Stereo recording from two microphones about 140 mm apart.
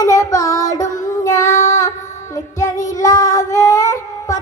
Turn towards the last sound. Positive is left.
turn(degrees=25)  # may be behind; listen again after turning